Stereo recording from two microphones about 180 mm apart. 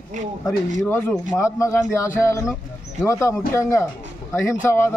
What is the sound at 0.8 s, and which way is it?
A man's voice, 10° left (ahead or behind).